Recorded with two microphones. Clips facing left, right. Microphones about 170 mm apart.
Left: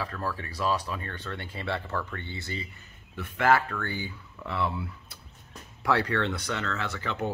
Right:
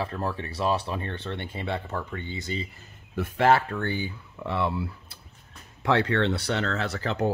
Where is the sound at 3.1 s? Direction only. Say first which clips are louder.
Right 3 dB; 30° right (ahead or behind).